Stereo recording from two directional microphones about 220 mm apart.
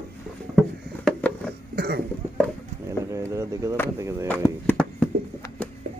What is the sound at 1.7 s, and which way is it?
Cough, 45° right (ahead or behind).